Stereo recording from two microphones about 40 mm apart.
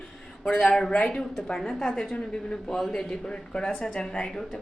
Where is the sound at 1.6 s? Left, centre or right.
Centre.